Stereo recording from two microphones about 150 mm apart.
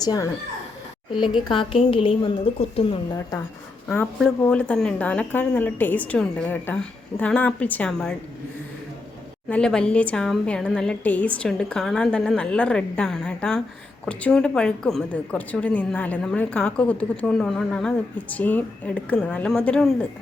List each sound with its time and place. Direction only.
0.0 s speech: 25° left (ahead or behind)
1.1 s a woman's voice: 5° right (ahead or behind)
1.5 s a woman's voice: 35° left (ahead or behind)
3.8 s a woman's voice: 10° left (ahead or behind)
9.5 s a woman's voice: 5° left (ahead or behind)